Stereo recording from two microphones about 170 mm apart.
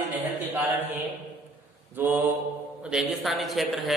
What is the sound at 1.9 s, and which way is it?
Mantra, 10° right (ahead or behind).